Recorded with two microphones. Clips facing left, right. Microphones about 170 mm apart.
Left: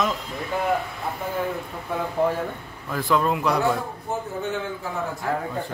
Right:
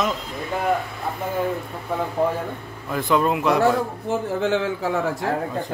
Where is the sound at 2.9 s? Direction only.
5° right (ahead or behind).